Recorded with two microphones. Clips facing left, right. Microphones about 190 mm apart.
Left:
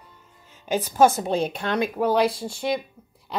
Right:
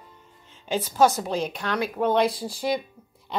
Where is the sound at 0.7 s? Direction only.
15° left (ahead or behind).